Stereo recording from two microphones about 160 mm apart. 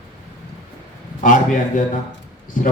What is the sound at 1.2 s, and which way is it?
Speech, 55° left (ahead or behind).